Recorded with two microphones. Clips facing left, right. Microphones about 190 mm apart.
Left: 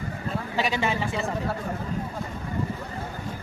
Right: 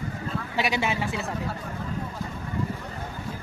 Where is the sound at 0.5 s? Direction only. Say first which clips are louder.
Even; 10° right (ahead or behind).